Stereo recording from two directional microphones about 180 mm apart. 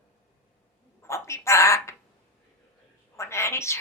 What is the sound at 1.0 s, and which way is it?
Speech, 15° left (ahead or behind).